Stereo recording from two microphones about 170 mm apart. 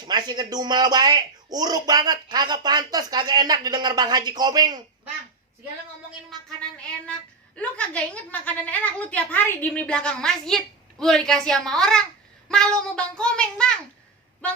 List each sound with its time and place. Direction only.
0.0 s speech: 25° right (ahead or behind)
7.5 s a woman's voice: 5° left (ahead or behind)